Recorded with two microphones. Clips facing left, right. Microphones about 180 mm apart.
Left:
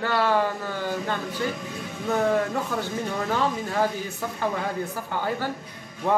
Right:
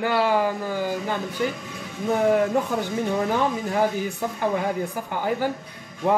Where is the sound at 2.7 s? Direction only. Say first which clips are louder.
Right 4 dB; 15° right (ahead or behind).